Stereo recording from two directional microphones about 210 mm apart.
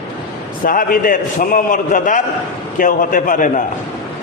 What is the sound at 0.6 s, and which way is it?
A man's voice, 40° left (ahead or behind).